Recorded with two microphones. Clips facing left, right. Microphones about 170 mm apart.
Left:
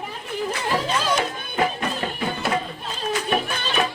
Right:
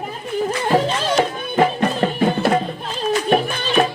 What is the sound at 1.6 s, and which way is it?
Music, 40° right (ahead or behind).